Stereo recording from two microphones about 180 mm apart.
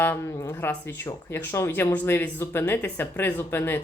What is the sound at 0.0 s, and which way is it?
Speech, 10° left (ahead or behind).